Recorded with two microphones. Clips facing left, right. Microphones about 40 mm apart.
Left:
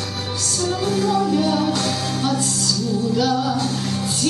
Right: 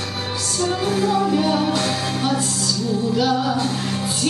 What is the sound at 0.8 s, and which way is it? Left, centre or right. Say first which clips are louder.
Music: even; centre.